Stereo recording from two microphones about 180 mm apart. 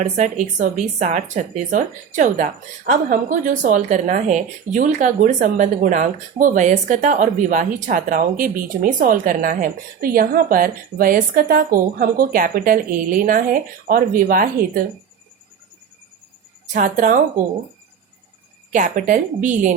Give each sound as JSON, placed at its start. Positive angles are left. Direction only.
{"t": 0.0, "sound": "speech", "side_deg": -40}
{"t": 16.7, "sound": "speech", "side_deg": -45}
{"t": 18.7, "sound": "speech", "side_deg": -45}